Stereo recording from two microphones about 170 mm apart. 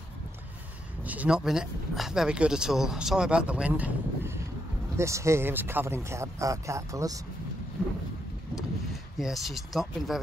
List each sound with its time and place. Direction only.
1.0 s speech: 10° right (ahead or behind)
9.2 s speech: centre (ahead or behind)